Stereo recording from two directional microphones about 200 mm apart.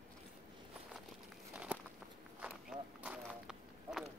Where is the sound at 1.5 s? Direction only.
10° right (ahead or behind).